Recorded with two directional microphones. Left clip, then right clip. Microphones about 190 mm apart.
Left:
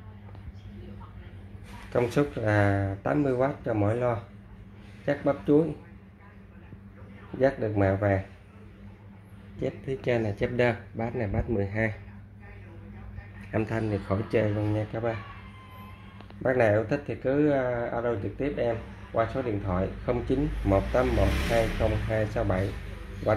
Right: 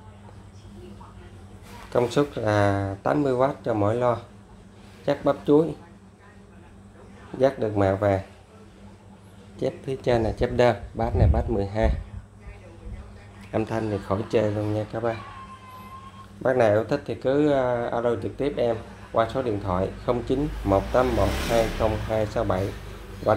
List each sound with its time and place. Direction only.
1.9 s speech: 10° right (ahead or behind)
7.3 s speech: 10° right (ahead or behind)
9.6 s speech: 20° right (ahead or behind)
10.1 s speech: 35° right (ahead or behind)
11.0 s speech: 15° right (ahead or behind)
13.5 s speech: 10° right (ahead or behind)
16.4 s speech: 10° right (ahead or behind)